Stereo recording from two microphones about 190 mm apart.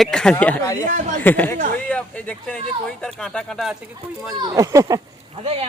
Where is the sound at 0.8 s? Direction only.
40° right (ahead or behind).